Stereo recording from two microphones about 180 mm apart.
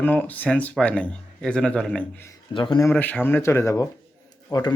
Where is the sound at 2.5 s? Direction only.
25° left (ahead or behind).